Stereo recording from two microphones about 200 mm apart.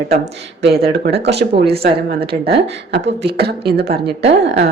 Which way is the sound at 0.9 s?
50° right (ahead or behind).